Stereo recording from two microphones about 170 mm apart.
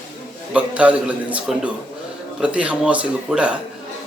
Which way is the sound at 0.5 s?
5° right (ahead or behind).